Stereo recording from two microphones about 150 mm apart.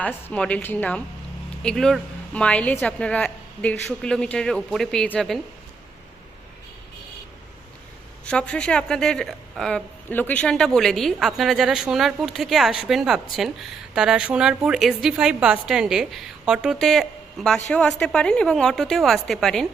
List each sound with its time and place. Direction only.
0.0 s a woman's voice: 10° left (ahead or behind)
8.2 s a woman's voice: 5° left (ahead or behind)